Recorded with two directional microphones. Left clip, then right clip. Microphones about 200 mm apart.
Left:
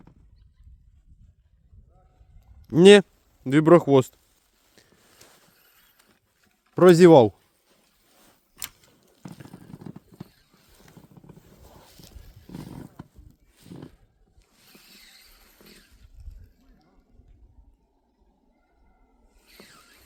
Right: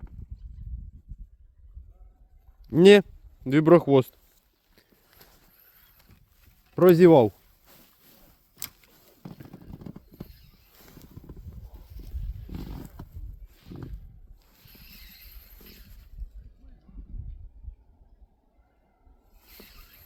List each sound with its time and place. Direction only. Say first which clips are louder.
2.6 s speech: left 2 dB; 10° left (ahead or behind)
6.7 s speech: left 3 dB; 20° left (ahead or behind)